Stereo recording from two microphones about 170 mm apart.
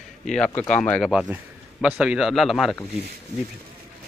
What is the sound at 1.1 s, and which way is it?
Speech, 5° right (ahead or behind).